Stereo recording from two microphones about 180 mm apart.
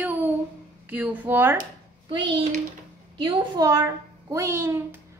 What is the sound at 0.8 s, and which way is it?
Speech, 10° right (ahead or behind).